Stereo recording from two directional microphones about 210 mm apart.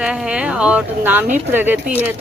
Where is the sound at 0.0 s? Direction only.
5° right (ahead or behind).